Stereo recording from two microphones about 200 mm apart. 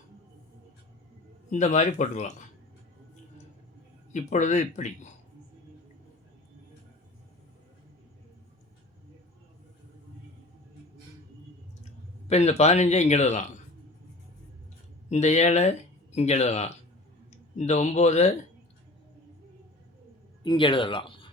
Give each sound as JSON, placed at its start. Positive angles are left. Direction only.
{"t": 1.5, "sound": "speech", "side_deg": 35}
{"t": 4.1, "sound": "speech", "side_deg": 35}
{"t": 12.3, "sound": "speech", "side_deg": 35}
{"t": 15.1, "sound": "speech", "side_deg": 35}
{"t": 20.4, "sound": "speech", "side_deg": 25}